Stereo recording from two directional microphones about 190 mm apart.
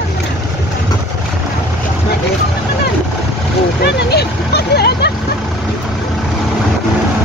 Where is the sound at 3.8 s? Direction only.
60° left (ahead or behind).